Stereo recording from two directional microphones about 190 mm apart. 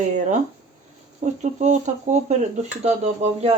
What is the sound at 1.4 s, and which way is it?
Speech, 40° right (ahead or behind).